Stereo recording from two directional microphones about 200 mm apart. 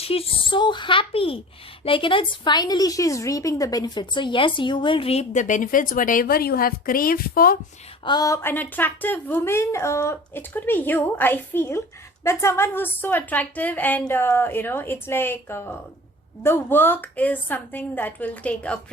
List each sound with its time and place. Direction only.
0.0 s speech: 30° left (ahead or behind); by 7.6 s 45° left (ahead or behind)
8.0 s a woman's voice: 20° left (ahead or behind)